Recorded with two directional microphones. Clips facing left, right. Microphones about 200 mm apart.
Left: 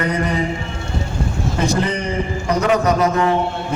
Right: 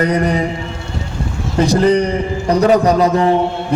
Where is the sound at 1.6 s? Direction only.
35° right (ahead or behind).